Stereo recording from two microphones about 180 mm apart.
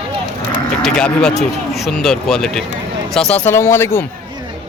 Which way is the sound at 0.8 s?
5° left (ahead or behind).